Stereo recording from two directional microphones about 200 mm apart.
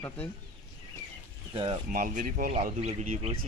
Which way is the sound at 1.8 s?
40° right (ahead or behind).